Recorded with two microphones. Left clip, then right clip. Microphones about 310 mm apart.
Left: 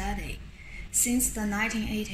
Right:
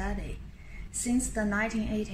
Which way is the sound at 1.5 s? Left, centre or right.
Right.